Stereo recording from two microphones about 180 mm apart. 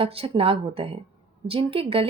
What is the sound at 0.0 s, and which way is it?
Speech, 30° right (ahead or behind).